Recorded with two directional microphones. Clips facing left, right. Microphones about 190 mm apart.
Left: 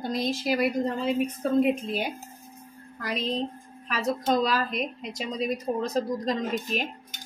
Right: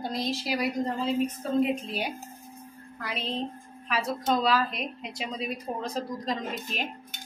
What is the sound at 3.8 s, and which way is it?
A woman's voice, 45° left (ahead or behind).